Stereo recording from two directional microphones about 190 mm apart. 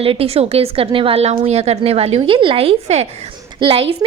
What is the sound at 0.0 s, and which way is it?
A woman's voice, 30° right (ahead or behind).